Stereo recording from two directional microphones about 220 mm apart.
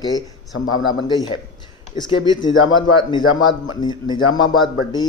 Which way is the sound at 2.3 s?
20° left (ahead or behind).